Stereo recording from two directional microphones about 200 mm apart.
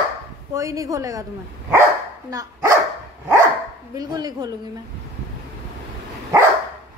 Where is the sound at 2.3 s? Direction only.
20° right (ahead or behind).